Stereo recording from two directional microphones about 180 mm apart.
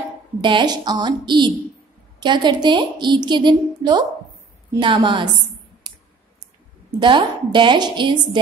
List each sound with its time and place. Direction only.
0.4 s a woman's voice: 25° right (ahead or behind)
6.9 s a woman's voice: 25° right (ahead or behind)